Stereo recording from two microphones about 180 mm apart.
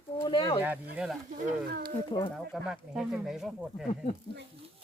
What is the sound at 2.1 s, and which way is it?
Speech, 25° left (ahead or behind).